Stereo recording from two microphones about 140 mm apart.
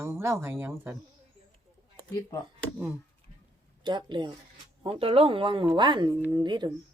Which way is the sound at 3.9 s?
35° right (ahead or behind).